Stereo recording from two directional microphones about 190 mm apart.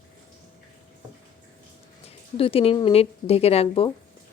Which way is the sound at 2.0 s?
30° left (ahead or behind).